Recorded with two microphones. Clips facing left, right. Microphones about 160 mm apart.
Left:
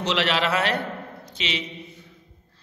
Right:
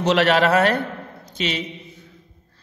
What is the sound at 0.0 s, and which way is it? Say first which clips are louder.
A man's voice: right 7 dB; 50° right (ahead or behind).